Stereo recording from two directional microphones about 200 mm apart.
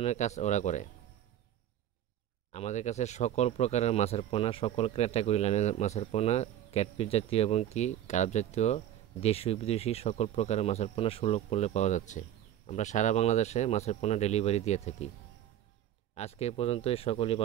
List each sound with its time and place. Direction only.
0.0 s speech: 35° left (ahead or behind)
2.5 s speech: 35° left (ahead or behind)
16.2 s speech: 30° left (ahead or behind)